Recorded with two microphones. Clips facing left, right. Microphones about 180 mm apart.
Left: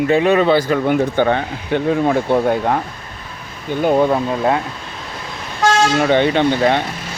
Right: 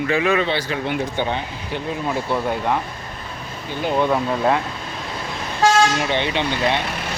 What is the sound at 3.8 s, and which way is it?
Speech, 50° left (ahead or behind).